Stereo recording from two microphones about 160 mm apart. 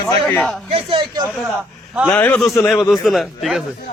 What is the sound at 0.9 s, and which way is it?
Speech, 30° right (ahead or behind).